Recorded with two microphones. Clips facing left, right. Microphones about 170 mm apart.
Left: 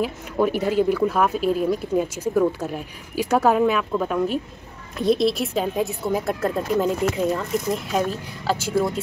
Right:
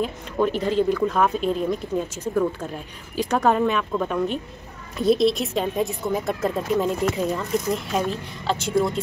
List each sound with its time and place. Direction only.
0.0 s speech: 10° left (ahead or behind)